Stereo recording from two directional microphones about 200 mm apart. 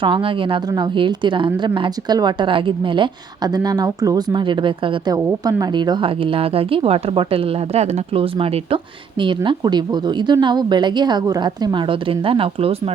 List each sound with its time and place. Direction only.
0.0 s a woman's voice: 25° right (ahead or behind)